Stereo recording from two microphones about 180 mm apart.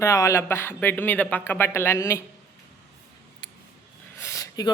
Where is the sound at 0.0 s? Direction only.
15° left (ahead or behind).